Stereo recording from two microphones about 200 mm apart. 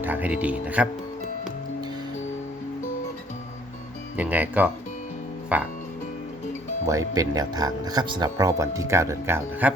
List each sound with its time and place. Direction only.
0.0 s speech: 10° right (ahead or behind)
4.2 s speech: 10° right (ahead or behind)
6.8 s speech: 15° right (ahead or behind)